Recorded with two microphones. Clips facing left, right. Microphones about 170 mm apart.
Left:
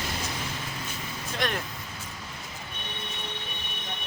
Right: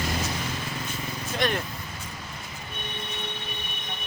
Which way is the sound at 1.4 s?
Centre (ahead or behind).